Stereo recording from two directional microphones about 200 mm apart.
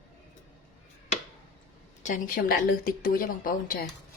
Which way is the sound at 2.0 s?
40° left (ahead or behind).